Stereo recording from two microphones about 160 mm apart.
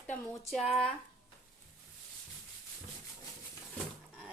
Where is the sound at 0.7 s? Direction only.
5° left (ahead or behind).